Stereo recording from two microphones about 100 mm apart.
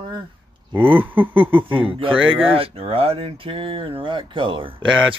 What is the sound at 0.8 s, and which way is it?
Speech, 20° right (ahead or behind).